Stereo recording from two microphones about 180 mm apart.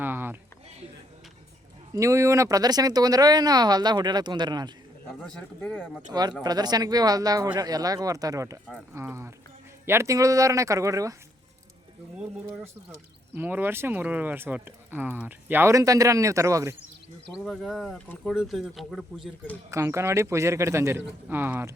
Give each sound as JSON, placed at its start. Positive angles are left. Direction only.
{"t": 0.0, "sound": "a sound", "side_deg": -10}
{"t": 1.9, "sound": "speech", "side_deg": -15}
{"t": 5.2, "sound": "speech", "side_deg": 5}
{"t": 6.4, "sound": "speech", "side_deg": -20}
{"t": 13.3, "sound": "speech", "side_deg": -10}
{"t": 17.3, "sound": "speech", "side_deg": 0}
{"t": 19.7, "sound": "speech", "side_deg": -15}